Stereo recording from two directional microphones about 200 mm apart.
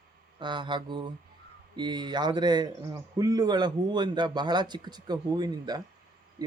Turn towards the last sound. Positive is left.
turn(degrees=-20)  # may be behind; listen again after turning